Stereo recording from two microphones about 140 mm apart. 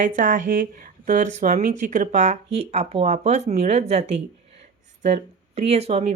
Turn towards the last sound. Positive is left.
turn(degrees=-45)  # may be behind; listen again after turning